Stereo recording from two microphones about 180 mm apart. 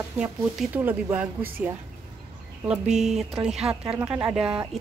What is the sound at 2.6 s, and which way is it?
A woman's voice, 5° right (ahead or behind).